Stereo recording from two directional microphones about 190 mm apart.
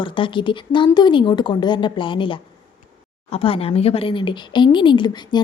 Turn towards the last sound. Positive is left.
turn(degrees=25)  # may be behind; listen again after turning